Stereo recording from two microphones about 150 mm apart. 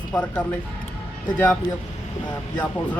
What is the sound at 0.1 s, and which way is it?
Speech, 5° left (ahead or behind).